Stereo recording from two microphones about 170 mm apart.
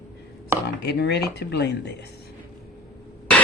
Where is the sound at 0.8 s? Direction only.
75° left (ahead or behind).